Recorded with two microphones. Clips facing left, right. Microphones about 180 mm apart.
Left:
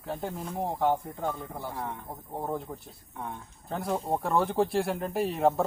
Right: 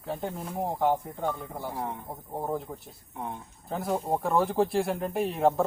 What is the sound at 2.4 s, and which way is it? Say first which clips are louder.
Speech: right 1 dB; 5° right (ahead or behind).